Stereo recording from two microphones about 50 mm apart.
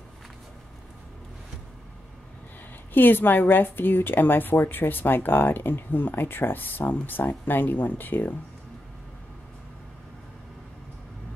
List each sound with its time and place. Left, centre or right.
2.9 s a woman's voice: left